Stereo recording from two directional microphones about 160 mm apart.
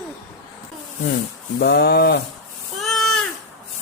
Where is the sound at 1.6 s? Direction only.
85° left.